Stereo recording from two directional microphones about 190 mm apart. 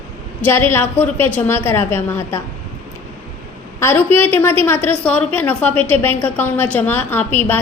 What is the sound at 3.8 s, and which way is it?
A woman's voice, 10° left (ahead or behind).